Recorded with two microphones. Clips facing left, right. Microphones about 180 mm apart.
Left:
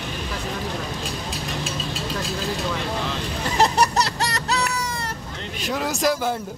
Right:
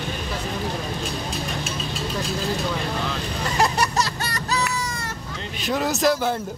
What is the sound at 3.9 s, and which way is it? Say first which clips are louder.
Music: left 2 dB; 70° left (ahead or behind).